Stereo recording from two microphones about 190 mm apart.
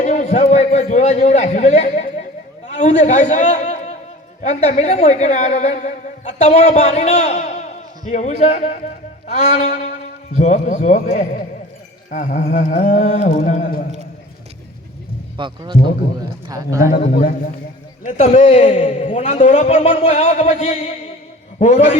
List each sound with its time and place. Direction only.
0.0 s a sound: 35° left (ahead or behind)
4.4 s a woman's voice: 35° left (ahead or behind)
15.4 s a man's voice: 25° right (ahead or behind)
16.9 s a man's voice: 50° left (ahead or behind)
18.0 s a woman's voice: 35° left (ahead or behind)